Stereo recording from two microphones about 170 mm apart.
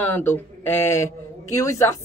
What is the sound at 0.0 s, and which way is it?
Speech, 10° left (ahead or behind).